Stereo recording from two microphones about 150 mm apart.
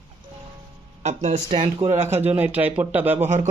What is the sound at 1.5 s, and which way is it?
Speech, 40° right (ahead or behind).